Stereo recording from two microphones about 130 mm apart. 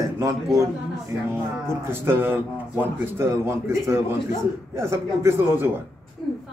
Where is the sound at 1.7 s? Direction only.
15° right (ahead or behind).